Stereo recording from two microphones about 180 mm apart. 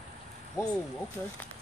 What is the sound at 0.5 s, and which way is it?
Speech, 5° left (ahead or behind).